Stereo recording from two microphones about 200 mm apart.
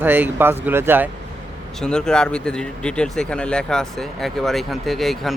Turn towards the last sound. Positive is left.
turn(degrees=0)  # may be behind; listen again after turning